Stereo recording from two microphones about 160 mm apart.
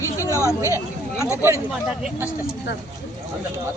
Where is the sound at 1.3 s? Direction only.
15° right (ahead or behind).